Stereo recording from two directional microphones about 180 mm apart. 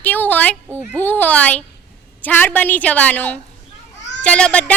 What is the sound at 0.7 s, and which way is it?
Speech, 15° right (ahead or behind).